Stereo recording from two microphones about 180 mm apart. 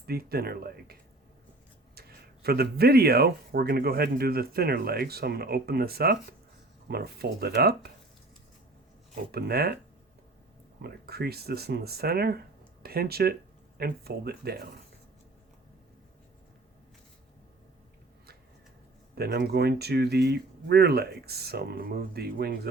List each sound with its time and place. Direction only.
0.0 s speech: 60° right (ahead or behind)
2.0 s speech: 60° right (ahead or behind)
9.3 s speech: 60° right (ahead or behind)
10.8 s speech: 60° right (ahead or behind)
19.1 s speech: 60° right (ahead or behind)